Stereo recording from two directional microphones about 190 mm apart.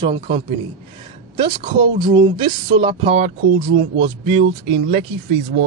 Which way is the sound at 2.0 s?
25° right (ahead or behind).